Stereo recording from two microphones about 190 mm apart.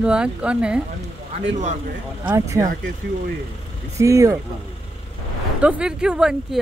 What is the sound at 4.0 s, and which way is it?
Speech, 15° right (ahead or behind).